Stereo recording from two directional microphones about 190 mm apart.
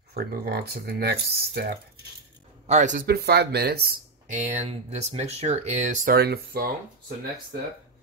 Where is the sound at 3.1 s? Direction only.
60° right (ahead or behind).